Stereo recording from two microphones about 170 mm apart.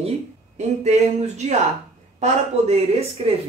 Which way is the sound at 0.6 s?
40° right (ahead or behind).